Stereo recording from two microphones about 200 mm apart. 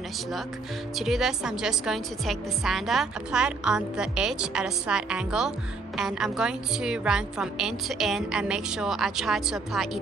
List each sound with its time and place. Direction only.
0.9 s a woman's voice: centre (ahead or behind)